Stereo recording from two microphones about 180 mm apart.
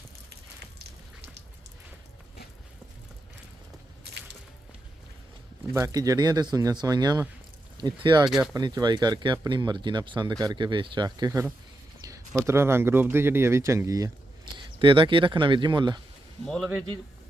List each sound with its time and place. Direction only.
5.7 s speech: 20° right (ahead or behind)
16.5 s speech: centre (ahead or behind)